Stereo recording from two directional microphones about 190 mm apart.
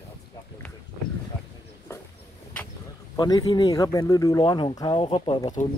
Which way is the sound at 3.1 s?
20° left (ahead or behind).